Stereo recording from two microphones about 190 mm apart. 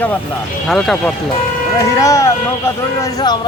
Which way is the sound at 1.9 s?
15° left (ahead or behind).